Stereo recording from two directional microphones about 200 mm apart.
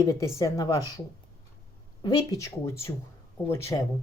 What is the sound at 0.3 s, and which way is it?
Speech, 15° left (ahead or behind).